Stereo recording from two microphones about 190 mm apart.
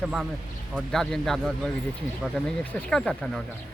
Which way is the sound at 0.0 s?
5° right (ahead or behind).